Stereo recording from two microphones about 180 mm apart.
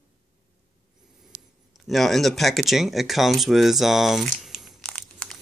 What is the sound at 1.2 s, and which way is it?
Speech, centre (ahead or behind).